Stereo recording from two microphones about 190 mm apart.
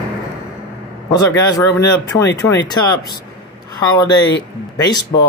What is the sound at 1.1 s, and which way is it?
Speech, 20° left (ahead or behind).